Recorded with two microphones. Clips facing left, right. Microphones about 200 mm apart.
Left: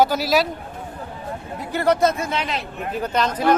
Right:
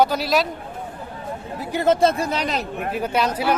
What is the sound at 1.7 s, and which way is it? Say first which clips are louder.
Speech: right 1 dB; 20° right (ahead or behind).